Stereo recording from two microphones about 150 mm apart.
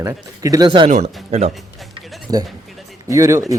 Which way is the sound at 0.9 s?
45° right (ahead or behind).